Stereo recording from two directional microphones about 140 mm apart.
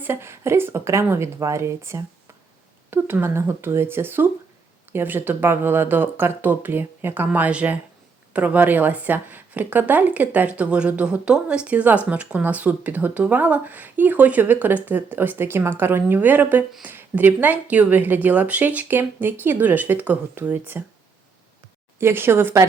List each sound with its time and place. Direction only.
0.0 s speech: 15° right (ahead or behind)
21.9 s speech: 15° right (ahead or behind)